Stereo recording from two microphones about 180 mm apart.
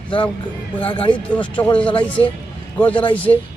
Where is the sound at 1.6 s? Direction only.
10° left (ahead or behind).